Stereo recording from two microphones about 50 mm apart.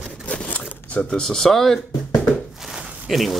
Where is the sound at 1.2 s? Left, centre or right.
Centre.